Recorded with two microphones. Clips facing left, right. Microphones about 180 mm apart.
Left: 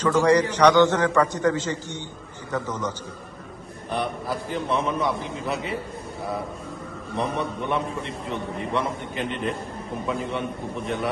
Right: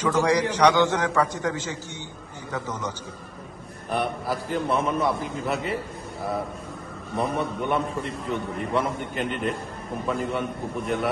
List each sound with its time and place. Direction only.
0.0 s a man's voice: 10° right (ahead or behind)
3.9 s a man's voice: centre (ahead or behind)
7.2 s a man's voice: centre (ahead or behind)